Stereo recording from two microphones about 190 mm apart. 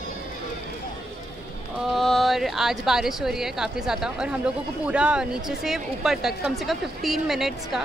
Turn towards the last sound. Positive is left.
turn(degrees=0)  # may be behind; listen again after turning